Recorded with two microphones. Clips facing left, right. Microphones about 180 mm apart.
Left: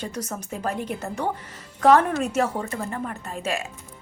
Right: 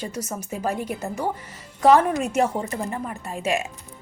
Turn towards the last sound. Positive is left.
turn(degrees=-10)  # may be behind; listen again after turning